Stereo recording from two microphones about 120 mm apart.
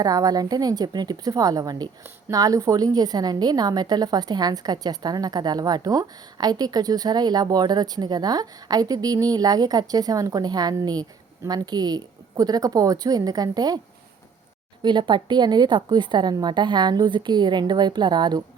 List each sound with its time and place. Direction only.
0.0 s a woman's voice: 30° right (ahead or behind)
14.8 s a woman's voice: 40° right (ahead or behind)